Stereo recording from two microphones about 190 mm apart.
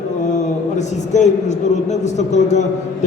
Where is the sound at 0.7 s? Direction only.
35° left (ahead or behind).